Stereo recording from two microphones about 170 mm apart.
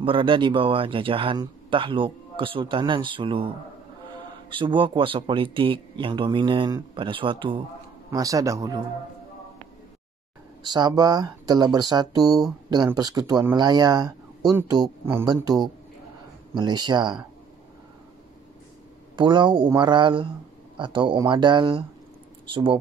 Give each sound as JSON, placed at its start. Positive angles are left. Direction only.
{"t": 0.0, "sound": "speech", "side_deg": -30}
{"t": 8.1, "sound": "speech", "side_deg": -20}
{"t": 10.6, "sound": "speech", "side_deg": -25}
{"t": 19.1, "sound": "speech", "side_deg": -30}